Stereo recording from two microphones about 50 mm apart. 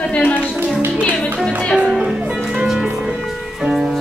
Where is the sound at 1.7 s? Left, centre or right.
Centre.